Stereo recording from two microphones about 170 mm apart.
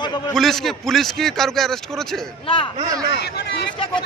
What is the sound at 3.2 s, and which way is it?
Speech, 75° left (ahead or behind).